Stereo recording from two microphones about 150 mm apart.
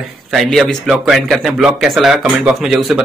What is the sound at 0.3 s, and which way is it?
Speech, centre (ahead or behind).